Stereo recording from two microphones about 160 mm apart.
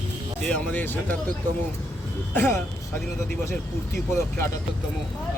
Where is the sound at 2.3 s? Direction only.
15° left (ahead or behind).